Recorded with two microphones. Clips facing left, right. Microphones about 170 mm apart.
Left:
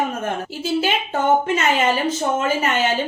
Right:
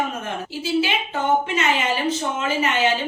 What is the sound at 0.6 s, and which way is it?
A woman's voice, 45° left (ahead or behind).